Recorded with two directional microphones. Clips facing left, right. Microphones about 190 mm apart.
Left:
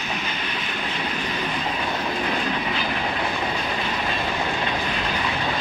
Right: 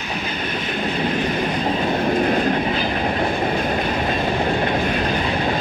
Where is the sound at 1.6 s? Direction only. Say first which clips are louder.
Right 7 dB; 45° right (ahead or behind).